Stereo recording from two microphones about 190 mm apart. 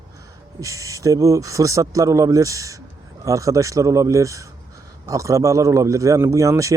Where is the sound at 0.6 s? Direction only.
15° right (ahead or behind).